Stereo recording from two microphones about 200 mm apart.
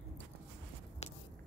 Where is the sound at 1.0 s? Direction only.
35° left (ahead or behind).